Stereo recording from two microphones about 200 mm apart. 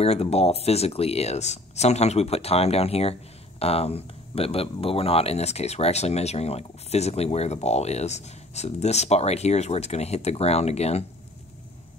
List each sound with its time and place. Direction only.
0.0 s speech: 30° left (ahead or behind)